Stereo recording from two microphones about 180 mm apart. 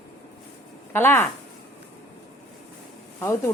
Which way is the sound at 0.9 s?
10° left (ahead or behind).